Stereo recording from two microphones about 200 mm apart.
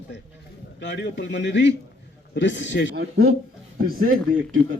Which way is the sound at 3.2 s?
50° right (ahead or behind).